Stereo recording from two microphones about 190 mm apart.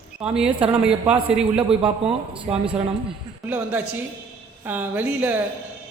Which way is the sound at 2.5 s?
10° right (ahead or behind).